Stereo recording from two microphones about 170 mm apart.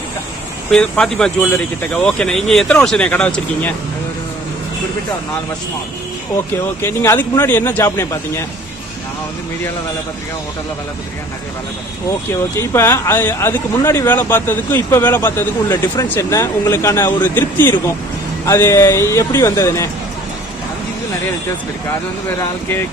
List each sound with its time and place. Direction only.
0.7 s speech: 5° left (ahead or behind)
6.8 s speech: 15° left (ahead or behind)
12.3 s speech: 15° left (ahead or behind)